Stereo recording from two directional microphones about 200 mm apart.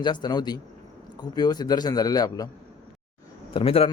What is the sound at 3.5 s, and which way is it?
Speech, 30° left (ahead or behind).